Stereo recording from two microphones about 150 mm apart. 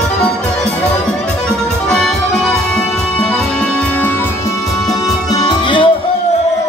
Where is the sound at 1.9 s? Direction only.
5° left (ahead or behind).